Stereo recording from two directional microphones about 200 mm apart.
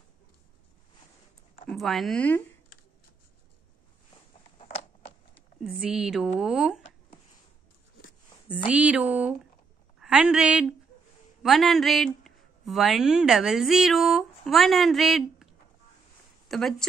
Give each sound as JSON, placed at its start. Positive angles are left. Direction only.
{"t": 1.7, "sound": "speech", "side_deg": 0}
{"t": 4.6, "sound": "a sound", "side_deg": 30}
{"t": 5.6, "sound": "speech", "side_deg": -5}
{"t": 8.5, "sound": "a woman's voice", "side_deg": -5}
{"t": 16.4, "sound": "speech", "side_deg": 0}